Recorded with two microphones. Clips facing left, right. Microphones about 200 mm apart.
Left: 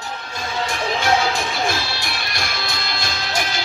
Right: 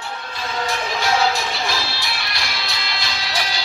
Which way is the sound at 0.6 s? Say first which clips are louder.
Left 2 dB; 50° left (ahead or behind).